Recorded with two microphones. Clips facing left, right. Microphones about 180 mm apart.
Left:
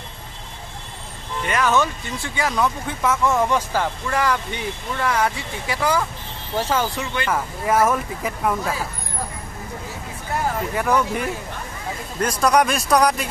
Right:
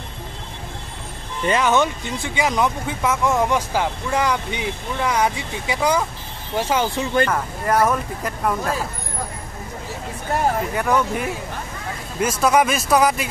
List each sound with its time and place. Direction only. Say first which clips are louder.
1.5 s speech: right 2 dB; 20° right (ahead or behind)
7.2 s speech: even; 5° left (ahead or behind)
10.6 s speech: even; centre (ahead or behind)